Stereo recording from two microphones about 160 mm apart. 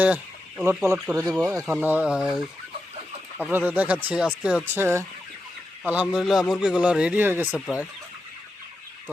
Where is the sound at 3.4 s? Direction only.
10° right (ahead or behind).